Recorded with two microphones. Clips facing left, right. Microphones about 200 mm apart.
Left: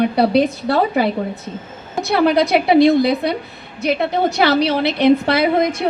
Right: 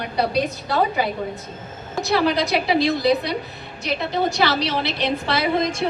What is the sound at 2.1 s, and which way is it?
A woman's voice, 60° left (ahead or behind).